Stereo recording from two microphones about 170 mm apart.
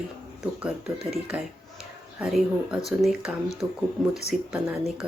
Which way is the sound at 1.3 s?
5° right (ahead or behind).